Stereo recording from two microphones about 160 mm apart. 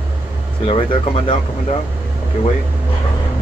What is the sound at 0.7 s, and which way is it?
Speech, 35° left (ahead or behind).